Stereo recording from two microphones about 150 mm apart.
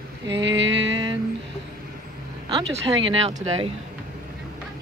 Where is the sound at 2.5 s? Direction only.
40° right (ahead or behind).